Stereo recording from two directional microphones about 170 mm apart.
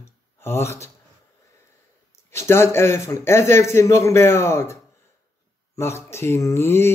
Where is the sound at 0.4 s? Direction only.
15° left (ahead or behind).